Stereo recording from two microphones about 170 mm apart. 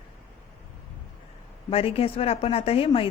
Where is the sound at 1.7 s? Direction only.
35° left (ahead or behind).